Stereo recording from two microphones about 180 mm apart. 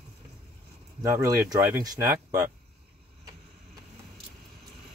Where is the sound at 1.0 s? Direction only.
20° right (ahead or behind).